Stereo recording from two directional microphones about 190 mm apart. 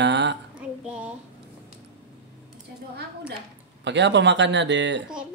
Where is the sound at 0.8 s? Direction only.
5° right (ahead or behind).